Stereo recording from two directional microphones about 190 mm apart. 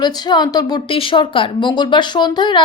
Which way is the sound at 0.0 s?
20° left (ahead or behind).